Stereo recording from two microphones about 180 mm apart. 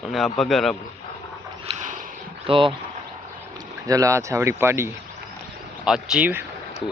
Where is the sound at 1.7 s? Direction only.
45° right (ahead or behind).